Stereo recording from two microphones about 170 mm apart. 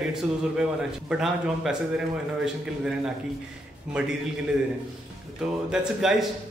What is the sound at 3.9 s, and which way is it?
Speech, 5° right (ahead or behind).